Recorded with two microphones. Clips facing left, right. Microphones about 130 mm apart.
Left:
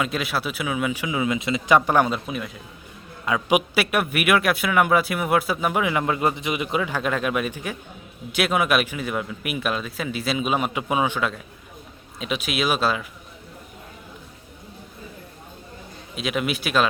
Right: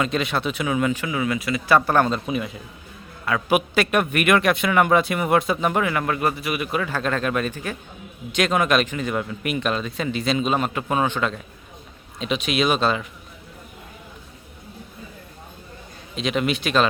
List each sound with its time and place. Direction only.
0.0 s speech: 5° left (ahead or behind)
3.2 s a man's voice: 15° left (ahead or behind)
5.9 s a man's voice: 20° left (ahead or behind)
16.1 s a man's voice: 5° left (ahead or behind)